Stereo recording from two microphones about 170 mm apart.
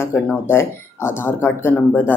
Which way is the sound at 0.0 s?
15° left (ahead or behind).